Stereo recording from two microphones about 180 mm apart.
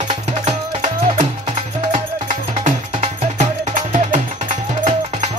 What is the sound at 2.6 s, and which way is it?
Music, 40° right (ahead or behind).